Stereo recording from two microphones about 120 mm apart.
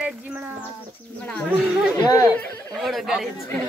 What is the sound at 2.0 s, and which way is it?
Speech, 30° left (ahead or behind).